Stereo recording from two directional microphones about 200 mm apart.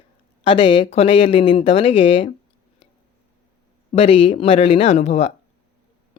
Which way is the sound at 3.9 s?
30° left (ahead or behind).